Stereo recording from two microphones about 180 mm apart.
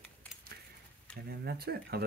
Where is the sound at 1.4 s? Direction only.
60° right (ahead or behind).